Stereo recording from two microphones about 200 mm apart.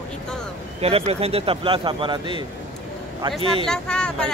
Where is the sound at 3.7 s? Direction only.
5° left (ahead or behind).